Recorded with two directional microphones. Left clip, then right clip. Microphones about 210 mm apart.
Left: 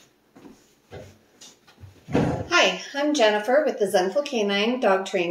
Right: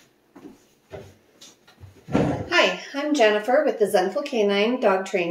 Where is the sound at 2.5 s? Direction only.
5° left (ahead or behind).